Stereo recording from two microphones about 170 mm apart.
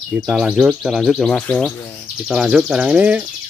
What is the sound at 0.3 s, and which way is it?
Speech, 5° right (ahead or behind).